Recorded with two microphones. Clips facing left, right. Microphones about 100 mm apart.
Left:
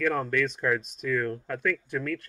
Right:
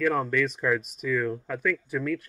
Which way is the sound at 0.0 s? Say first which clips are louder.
Right 2 dB; 5° right (ahead or behind).